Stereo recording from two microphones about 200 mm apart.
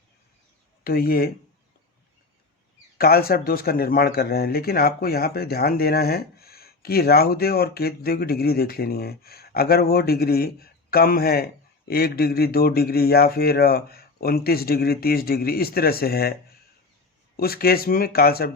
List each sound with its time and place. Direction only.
0.9 s speech: 50° left (ahead or behind)
3.0 s speech: 50° left (ahead or behind)
17.3 s speech: 50° left (ahead or behind)